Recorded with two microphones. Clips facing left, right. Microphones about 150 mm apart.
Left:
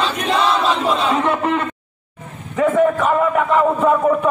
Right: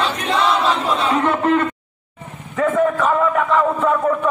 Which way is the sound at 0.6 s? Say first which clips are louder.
Left 1 dB; 25° left (ahead or behind).